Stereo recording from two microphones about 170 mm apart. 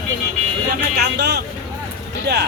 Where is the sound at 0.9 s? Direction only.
75° right (ahead or behind).